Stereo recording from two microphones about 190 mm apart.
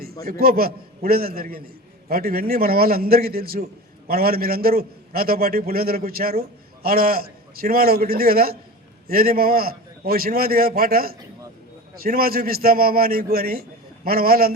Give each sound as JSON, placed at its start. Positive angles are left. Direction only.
{"t": 0.3, "sound": "a man's voice", "side_deg": -50}